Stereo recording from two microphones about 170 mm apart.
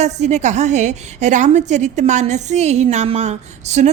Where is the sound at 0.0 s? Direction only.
40° right (ahead or behind).